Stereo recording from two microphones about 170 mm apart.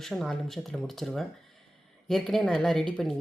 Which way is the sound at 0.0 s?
Centre (ahead or behind).